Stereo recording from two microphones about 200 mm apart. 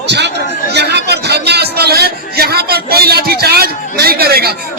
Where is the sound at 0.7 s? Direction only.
55° right (ahead or behind).